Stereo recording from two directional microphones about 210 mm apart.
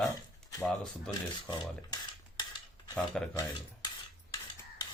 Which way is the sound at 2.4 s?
20° left (ahead or behind).